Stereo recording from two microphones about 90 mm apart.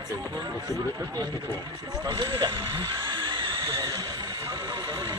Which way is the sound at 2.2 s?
65° right (ahead or behind).